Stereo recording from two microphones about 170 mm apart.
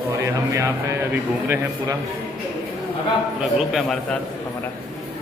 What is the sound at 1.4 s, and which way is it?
Speech, 15° right (ahead or behind).